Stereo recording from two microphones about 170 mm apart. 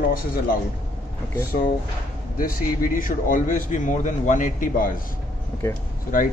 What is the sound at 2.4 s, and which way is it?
A man's voice, 55° left (ahead or behind).